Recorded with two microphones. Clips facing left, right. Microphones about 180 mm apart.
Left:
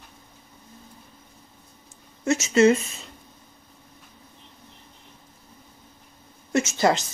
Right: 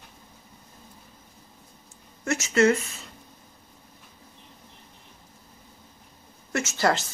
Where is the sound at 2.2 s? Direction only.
20° left (ahead or behind).